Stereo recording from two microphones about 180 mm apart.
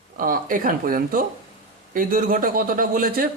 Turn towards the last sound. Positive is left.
turn(degrees=-50)  # may be behind; listen again after turning